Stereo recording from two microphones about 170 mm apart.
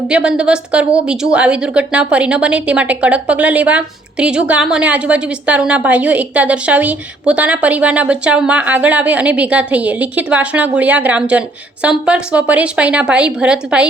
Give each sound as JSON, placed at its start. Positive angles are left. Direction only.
{"t": 0.1, "sound": "a woman's voice", "side_deg": -5}